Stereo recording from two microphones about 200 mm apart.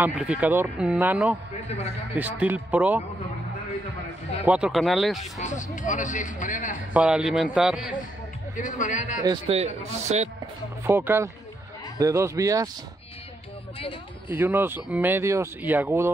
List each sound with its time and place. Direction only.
0.0 s speech: 5° right (ahead or behind)
4.5 s a man's voice: 5° right (ahead or behind)
5.2 s speech: 35° left (ahead or behind)
6.9 s a man's voice: 5° right (ahead or behind)
8.5 s speech: 40° left (ahead or behind)
9.2 s a man's voice: 25° right (ahead or behind)
10.8 s speech: 10° right (ahead or behind)
14.3 s speech: 10° right (ahead or behind)